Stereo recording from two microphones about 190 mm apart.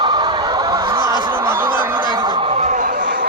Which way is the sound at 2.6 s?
45° right (ahead or behind).